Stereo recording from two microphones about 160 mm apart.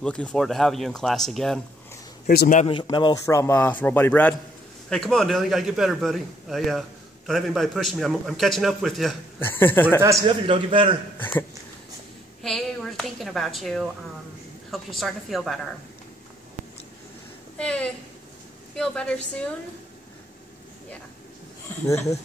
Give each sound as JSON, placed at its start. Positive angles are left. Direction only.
{"t": 0.0, "sound": "a man's voice", "side_deg": 5}
{"t": 2.2, "sound": "speech", "side_deg": 65}
{"t": 2.6, "sound": "speech", "side_deg": 30}
{"t": 3.3, "sound": "a man's voice", "side_deg": 15}
{"t": 9.4, "sound": "speech", "side_deg": 15}
{"t": 10.0, "sound": "a man's voice", "side_deg": -20}
{"t": 10.4, "sound": "a man's voice", "side_deg": -35}
{"t": 12.4, "sound": "a woman's voice", "side_deg": 0}
{"t": 17.6, "sound": "speech", "side_deg": 5}
{"t": 21.6, "sound": "speech", "side_deg": 20}